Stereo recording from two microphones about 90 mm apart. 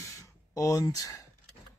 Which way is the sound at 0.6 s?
40° left (ahead or behind).